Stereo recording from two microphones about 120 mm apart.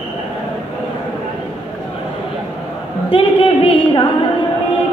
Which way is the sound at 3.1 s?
50° left (ahead or behind).